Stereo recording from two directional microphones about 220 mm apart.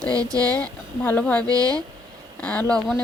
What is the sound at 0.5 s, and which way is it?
Speech, 5° left (ahead or behind).